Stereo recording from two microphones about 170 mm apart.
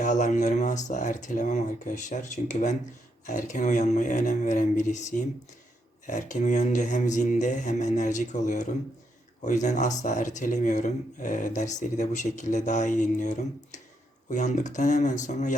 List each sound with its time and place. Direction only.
0.0 s speech: 45° left (ahead or behind)